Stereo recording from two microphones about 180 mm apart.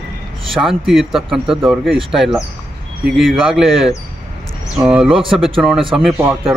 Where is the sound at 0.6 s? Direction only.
Centre (ahead or behind).